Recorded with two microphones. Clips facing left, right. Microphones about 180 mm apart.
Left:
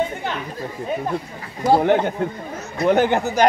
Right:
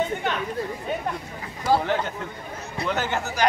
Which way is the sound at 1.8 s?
55° left (ahead or behind).